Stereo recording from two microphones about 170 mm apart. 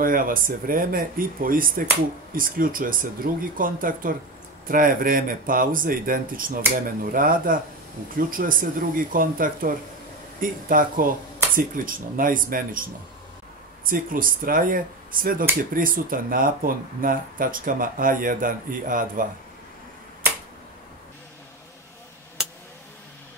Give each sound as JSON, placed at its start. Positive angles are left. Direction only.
{"t": 0.0, "sound": "speech", "side_deg": -55}